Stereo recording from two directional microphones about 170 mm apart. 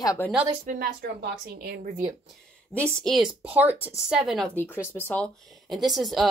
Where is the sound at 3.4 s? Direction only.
10° right (ahead or behind).